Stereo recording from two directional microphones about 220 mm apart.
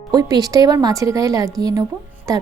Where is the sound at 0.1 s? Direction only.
15° right (ahead or behind).